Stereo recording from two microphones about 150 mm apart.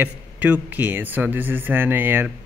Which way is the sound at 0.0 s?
10° right (ahead or behind).